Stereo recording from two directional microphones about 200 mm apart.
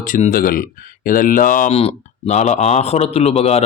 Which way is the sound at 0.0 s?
40° left (ahead or behind).